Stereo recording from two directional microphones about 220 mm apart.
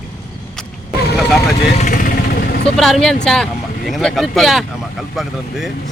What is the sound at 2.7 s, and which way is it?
Speech, centre (ahead or behind).